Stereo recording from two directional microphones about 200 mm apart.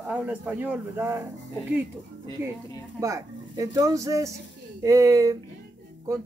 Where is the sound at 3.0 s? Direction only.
15° right (ahead or behind).